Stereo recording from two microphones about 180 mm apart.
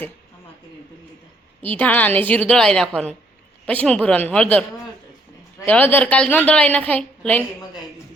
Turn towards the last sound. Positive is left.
turn(degrees=5)  # may be behind; listen again after turning